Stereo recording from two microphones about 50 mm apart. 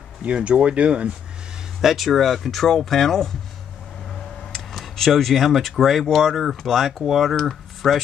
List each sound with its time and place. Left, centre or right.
0.2 s speech: right
1.8 s speech: centre
4.5 s speech: centre